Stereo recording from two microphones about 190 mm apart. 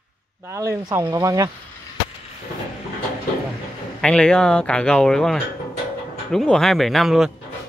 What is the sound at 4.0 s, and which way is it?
Speech, 5° left (ahead or behind).